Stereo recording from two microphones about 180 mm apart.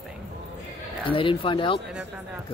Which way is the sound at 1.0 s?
30° left (ahead or behind).